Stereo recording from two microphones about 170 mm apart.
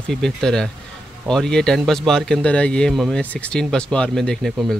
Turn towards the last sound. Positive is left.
turn(degrees=0)  # may be behind; listen again after turning